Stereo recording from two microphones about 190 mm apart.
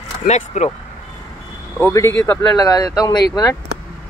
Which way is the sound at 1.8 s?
15° left (ahead or behind).